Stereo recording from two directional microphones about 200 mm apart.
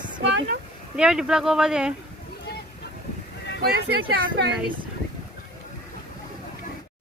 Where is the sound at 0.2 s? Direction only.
60° right (ahead or behind).